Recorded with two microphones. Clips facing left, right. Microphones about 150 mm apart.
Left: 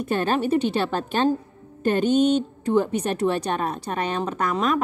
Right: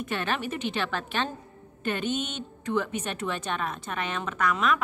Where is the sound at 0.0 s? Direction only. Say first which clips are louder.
Left 8 dB; 40° left (ahead or behind).